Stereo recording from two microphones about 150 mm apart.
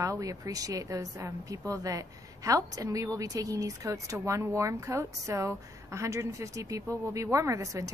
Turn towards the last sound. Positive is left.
turn(degrees=-20)  # may be behind; listen again after turning